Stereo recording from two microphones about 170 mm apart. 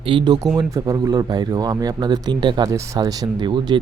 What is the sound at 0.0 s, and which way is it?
Speech, 30° right (ahead or behind).